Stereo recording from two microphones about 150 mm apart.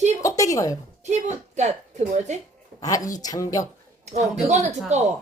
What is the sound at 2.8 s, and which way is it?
Speech, 25° left (ahead or behind).